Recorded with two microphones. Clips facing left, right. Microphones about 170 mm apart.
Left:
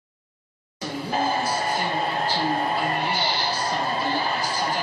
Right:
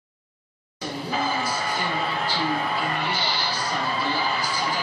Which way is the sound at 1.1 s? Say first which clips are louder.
Left 3 dB; 40° left (ahead or behind).